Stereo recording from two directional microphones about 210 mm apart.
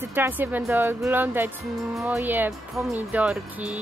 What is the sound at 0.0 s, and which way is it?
Speech, 10° right (ahead or behind).